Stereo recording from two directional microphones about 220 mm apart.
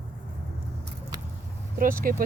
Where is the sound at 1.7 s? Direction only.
40° right (ahead or behind).